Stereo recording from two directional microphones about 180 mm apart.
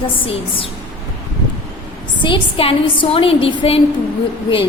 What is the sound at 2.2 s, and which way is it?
A woman's voice, 30° left (ahead or behind).